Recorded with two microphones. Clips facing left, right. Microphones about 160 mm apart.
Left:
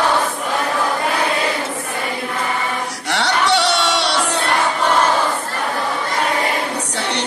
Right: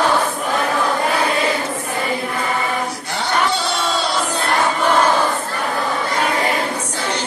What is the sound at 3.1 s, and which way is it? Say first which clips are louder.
Music: left 4 dB; 80° left.